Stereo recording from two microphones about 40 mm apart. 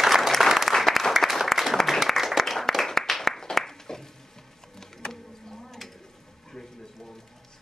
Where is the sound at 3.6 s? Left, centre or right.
Centre.